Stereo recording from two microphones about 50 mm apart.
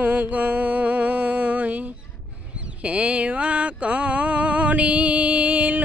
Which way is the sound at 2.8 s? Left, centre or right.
Right.